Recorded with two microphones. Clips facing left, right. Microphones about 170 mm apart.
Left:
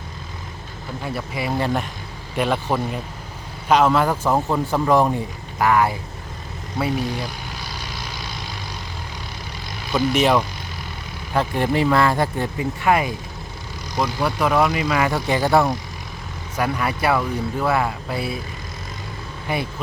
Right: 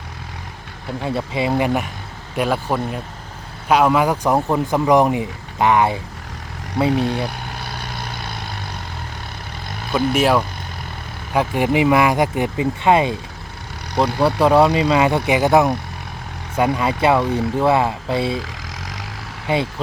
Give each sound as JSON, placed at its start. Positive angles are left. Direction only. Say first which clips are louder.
{"t": 1.0, "sound": "speech", "louder": "right 5 dB", "side_deg": -25}
{"t": 6.9, "sound": "vehicle", "louder": "right 5 dB", "side_deg": -65}
{"t": 9.9, "sound": "speech", "louder": "right 1 dB", "side_deg": -55}
{"t": 10.2, "sound": "speech", "louder": "right 1 dB", "side_deg": -5}
{"t": 14.2, "sound": "speech", "louder": "right 6 dB", "side_deg": -30}
{"t": 15.3, "sound": "speech", "louder": "right 2 dB", "side_deg": -15}
{"t": 19.5, "sound": "speech", "louder": "right 5 dB", "side_deg": -25}